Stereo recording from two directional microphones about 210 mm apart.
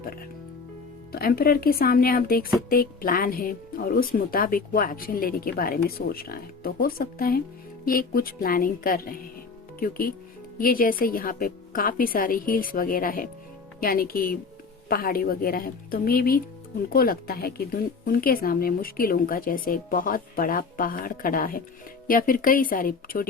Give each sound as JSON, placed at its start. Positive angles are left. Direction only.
{"t": 1.1, "sound": "speech", "side_deg": 45}